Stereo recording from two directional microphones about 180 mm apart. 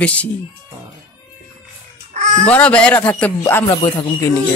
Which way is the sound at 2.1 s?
40° right (ahead or behind).